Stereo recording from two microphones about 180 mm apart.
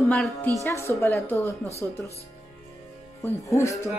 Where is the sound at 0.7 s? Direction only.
15° left (ahead or behind).